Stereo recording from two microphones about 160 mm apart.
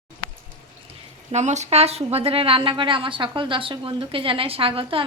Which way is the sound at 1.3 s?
45° right (ahead or behind).